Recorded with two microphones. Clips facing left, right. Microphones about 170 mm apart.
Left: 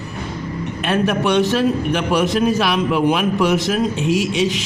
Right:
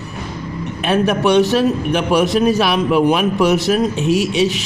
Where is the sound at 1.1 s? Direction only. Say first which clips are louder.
Right 4 dB; 40° right (ahead or behind).